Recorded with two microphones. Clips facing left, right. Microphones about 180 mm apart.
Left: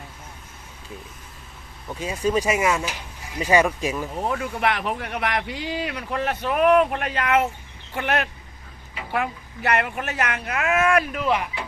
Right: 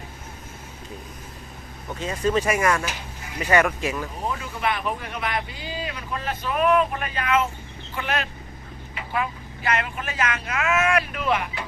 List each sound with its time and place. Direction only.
2.0 s speech: 10° left (ahead or behind)
4.3 s speech: 70° left (ahead or behind); by 11.2 s 45° left (ahead or behind)